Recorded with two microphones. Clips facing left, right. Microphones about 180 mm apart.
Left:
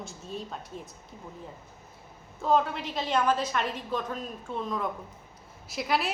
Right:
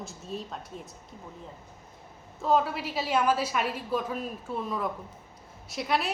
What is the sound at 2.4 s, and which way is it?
A woman's voice, 5° right (ahead or behind).